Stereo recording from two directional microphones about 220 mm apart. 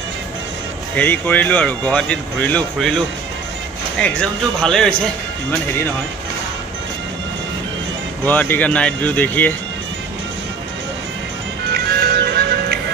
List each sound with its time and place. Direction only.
0.9 s speech: 10° left (ahead or behind)
4.0 s speech: 5° left (ahead or behind)
8.3 s speech: 10° left (ahead or behind)
11.7 s music: 45° right (ahead or behind)